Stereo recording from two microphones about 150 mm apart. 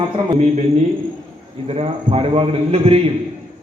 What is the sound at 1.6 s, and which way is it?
A man's voice, 35° right (ahead or behind).